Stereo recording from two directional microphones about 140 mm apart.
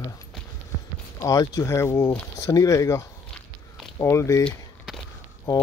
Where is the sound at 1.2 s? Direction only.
25° left (ahead or behind).